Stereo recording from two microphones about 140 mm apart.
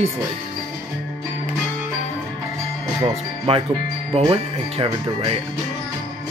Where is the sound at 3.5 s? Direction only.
45° right (ahead or behind).